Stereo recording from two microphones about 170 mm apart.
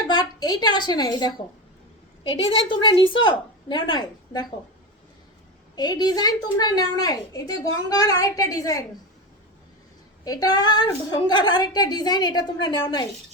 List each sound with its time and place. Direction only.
0.1 s a woman's voice: 25° left (ahead or behind)
2.3 s a woman's voice: 30° left (ahead or behind)
5.7 s a woman's voice: 25° left (ahead or behind)
10.2 s a woman's voice: 20° left (ahead or behind)